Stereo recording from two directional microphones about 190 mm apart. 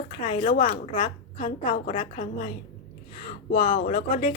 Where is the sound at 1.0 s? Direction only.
25° left (ahead or behind).